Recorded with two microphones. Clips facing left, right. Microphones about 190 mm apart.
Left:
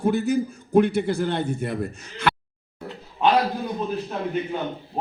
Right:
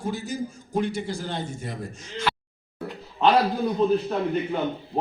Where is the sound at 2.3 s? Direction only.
60° left (ahead or behind).